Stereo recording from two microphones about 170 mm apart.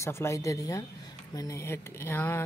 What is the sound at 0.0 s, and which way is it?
Speech, 15° left (ahead or behind).